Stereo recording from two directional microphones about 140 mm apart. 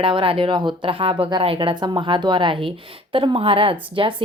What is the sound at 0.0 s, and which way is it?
A woman's voice, 40° right (ahead or behind).